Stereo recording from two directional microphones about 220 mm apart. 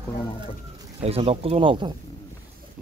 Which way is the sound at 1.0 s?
25° right (ahead or behind).